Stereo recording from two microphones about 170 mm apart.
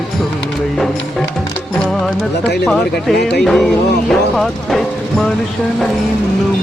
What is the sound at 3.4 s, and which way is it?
Speech, centre (ahead or behind).